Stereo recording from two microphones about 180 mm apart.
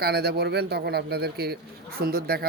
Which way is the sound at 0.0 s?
60° right (ahead or behind).